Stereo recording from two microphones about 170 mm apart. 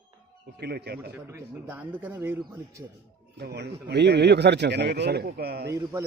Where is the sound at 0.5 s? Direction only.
70° right (ahead or behind).